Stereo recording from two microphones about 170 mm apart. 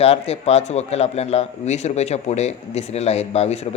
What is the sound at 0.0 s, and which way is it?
Speech, 35° left (ahead or behind).